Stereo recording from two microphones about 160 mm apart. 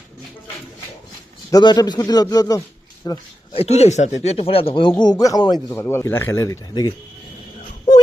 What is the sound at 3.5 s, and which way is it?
Speech, 40° left (ahead or behind).